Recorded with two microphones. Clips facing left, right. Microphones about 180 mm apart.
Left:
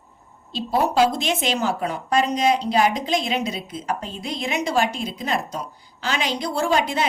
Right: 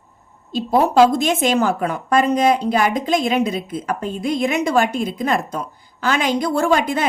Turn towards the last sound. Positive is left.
turn(degrees=-50)  # may be behind; listen again after turning